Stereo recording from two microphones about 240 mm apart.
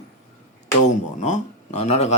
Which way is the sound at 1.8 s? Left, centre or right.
Left.